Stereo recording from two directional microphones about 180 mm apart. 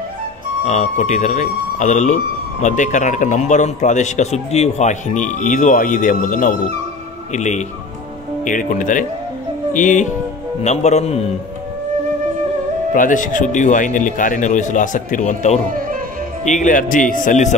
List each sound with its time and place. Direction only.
0.7 s a man's voice: 40° left (ahead or behind)
12.9 s a man's voice: 45° left (ahead or behind)